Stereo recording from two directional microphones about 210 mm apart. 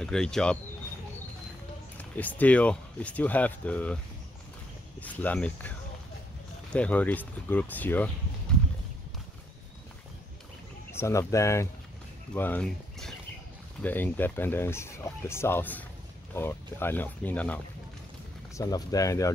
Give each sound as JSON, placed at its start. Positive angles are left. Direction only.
{"t": 0.0, "sound": "speech", "side_deg": 5}
{"t": 2.0, "sound": "speech", "side_deg": 10}
{"t": 5.0, "sound": "speech", "side_deg": 5}
{"t": 10.9, "sound": "speech", "side_deg": 15}
{"t": 18.6, "sound": "speech", "side_deg": 15}